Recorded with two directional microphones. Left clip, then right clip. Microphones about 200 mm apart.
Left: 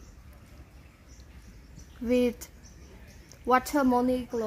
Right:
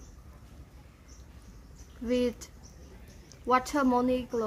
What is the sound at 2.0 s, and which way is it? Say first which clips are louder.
A woman's voice: left 3 dB; 55° left (ahead or behind).